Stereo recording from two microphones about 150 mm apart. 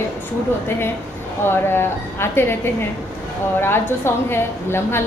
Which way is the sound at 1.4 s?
15° left (ahead or behind).